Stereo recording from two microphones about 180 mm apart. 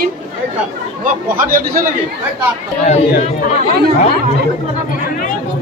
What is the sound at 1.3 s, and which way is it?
Speech, 50° right (ahead or behind).